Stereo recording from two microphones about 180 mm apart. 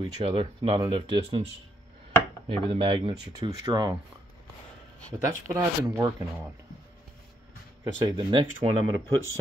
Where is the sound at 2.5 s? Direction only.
30° right (ahead or behind).